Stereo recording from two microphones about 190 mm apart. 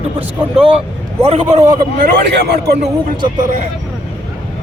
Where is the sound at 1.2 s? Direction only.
35° right (ahead or behind).